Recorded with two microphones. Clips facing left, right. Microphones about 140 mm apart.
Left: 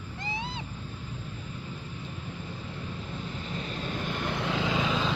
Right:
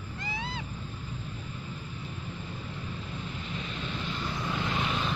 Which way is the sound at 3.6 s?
40° left (ahead or behind).